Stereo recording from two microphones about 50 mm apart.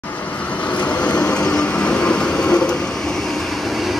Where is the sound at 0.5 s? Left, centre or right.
Left.